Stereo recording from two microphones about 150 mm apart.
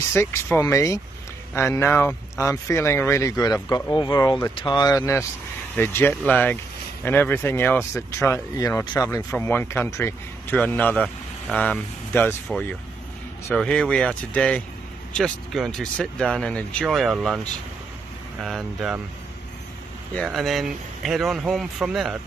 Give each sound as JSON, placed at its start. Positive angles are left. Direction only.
{"t": 0.1, "sound": "speech", "side_deg": 15}
{"t": 9.3, "sound": "speech", "side_deg": 15}
{"t": 18.4, "sound": "speech", "side_deg": 0}
{"t": 20.2, "sound": "speech", "side_deg": 0}